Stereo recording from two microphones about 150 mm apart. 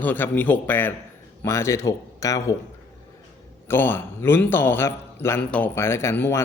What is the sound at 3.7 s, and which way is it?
A man's voice, 15° left (ahead or behind).